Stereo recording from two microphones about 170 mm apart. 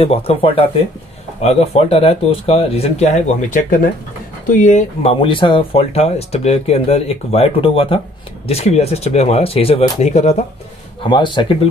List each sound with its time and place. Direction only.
0.0 s speech: 35° left (ahead or behind)
5.1 s speech: 30° left (ahead or behind)
11.0 s speech: 30° left (ahead or behind)